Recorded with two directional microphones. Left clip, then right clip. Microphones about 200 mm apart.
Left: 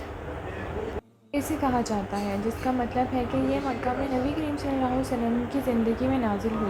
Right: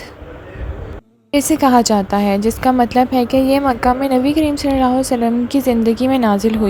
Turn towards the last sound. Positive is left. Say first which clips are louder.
# right 12 dB
turn(degrees=-50)  # may be behind; listen again after turning